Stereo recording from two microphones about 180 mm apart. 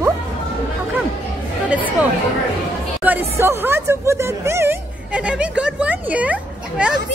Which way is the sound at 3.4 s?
15° right (ahead or behind).